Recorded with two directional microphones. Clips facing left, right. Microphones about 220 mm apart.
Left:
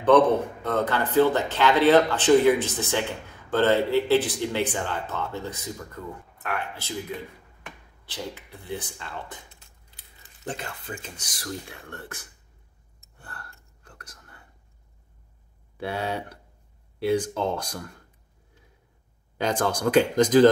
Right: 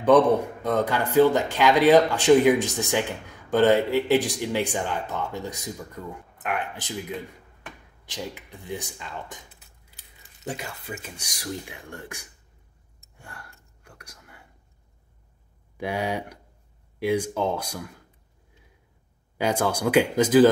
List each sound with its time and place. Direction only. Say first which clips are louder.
0.0 s a man's voice: right 1 dB; 10° right (ahead or behind)
8.0 s a man's voice: right 1 dB; 15° right (ahead or behind)
9.5 s keys jangling: even; 5° right (ahead or behind)
10.5 s a man's voice: right 1 dB; 10° right (ahead or behind)
13.2 s whispering: even; 10° right (ahead or behind)
15.8 s a man's voice: right 2 dB; 15° right (ahead or behind)
19.3 s a man's voice: right 1 dB; 10° right (ahead or behind)